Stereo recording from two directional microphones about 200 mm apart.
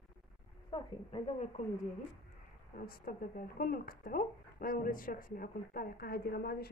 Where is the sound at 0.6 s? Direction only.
25° left (ahead or behind).